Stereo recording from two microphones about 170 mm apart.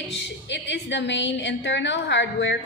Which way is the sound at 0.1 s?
90° left.